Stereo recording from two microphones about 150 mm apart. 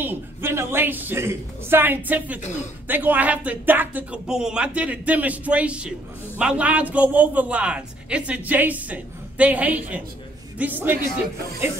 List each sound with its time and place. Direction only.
0.0 s speech: 15° right (ahead or behind)
2.4 s speech: 50° left (ahead or behind)
2.9 s speech: 10° right (ahead or behind)